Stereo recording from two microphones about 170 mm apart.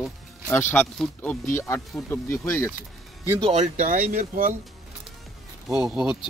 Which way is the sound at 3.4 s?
40° right (ahead or behind).